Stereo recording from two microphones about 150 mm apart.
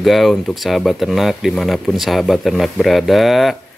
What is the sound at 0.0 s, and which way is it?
Speech, centre (ahead or behind).